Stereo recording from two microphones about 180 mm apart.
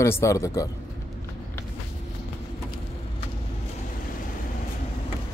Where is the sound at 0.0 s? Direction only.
15° left (ahead or behind).